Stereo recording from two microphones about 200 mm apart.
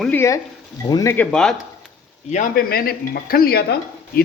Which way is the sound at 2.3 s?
45° left (ahead or behind).